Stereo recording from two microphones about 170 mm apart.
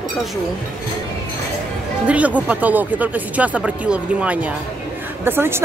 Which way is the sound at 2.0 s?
10° right (ahead or behind).